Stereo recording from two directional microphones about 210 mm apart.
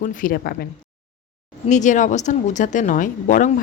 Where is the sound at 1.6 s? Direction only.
35° left (ahead or behind).